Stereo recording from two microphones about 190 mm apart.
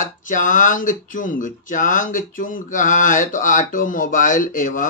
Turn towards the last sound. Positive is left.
turn(degrees=45)  # may be behind; listen again after turning